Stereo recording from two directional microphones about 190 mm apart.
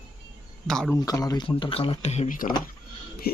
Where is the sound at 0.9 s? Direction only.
20° left (ahead or behind).